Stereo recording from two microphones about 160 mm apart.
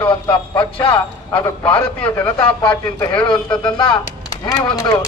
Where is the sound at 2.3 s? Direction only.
25° left (ahead or behind).